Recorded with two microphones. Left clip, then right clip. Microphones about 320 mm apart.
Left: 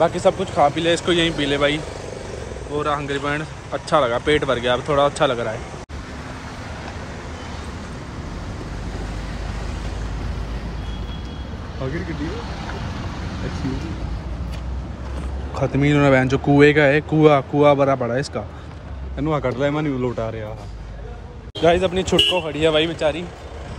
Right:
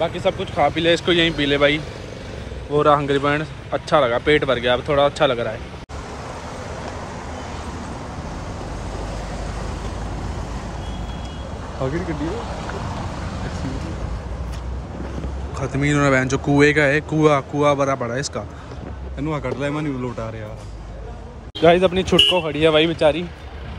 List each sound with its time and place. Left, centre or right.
0.0 s speech: centre
13.1 s vehicle: right
15.5 s speech: centre
21.5 s speech: centre